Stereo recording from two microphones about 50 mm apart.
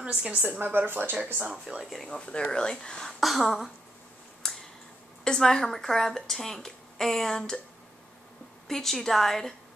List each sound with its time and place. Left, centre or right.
0.0 s a woman's voice: right
0.7 s speech: right
1.9 s a sound: centre
2.1 s a woman's voice: centre
3.2 s a sound: centre
5.2 s a woman's voice: centre
8.6 s a woman's voice: centre